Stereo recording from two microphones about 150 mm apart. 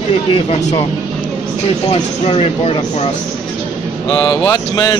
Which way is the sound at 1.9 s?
40° left (ahead or behind).